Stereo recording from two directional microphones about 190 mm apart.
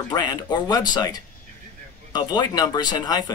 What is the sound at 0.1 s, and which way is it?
Speech, 20° left (ahead or behind).